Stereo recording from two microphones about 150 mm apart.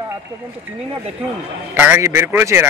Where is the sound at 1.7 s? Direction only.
15° right (ahead or behind).